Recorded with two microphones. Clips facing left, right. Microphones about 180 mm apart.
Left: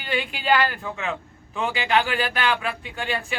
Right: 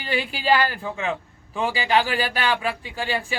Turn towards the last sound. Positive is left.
turn(degrees=-35)  # may be behind; listen again after turning